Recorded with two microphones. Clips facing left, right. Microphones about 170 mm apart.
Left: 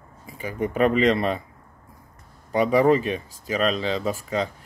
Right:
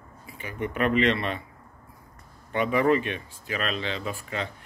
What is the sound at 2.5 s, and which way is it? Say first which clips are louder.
Speech: left 4 dB; 35° left (ahead or behind).